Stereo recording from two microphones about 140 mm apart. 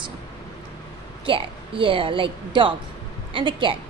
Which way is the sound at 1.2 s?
40° right (ahead or behind).